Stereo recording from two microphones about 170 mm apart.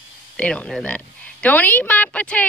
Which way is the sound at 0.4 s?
5° left (ahead or behind).